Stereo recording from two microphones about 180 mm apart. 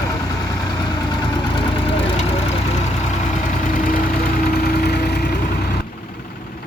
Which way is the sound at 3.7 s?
50° left (ahead or behind).